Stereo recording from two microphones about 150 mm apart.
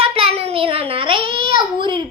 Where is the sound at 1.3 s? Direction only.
70° left (ahead or behind).